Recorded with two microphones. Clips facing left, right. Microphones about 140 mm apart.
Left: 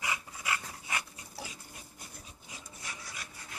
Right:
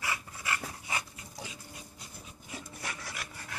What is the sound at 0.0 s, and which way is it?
Dog, 15° left (ahead or behind).